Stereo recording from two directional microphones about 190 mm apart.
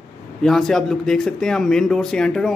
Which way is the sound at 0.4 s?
Centre (ahead or behind).